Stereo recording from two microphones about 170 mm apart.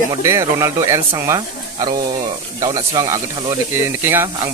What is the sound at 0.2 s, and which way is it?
Speech, 15° right (ahead or behind).